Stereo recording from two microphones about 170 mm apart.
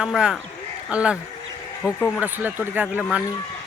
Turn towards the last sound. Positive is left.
turn(degrees=-10)  # may be behind; listen again after turning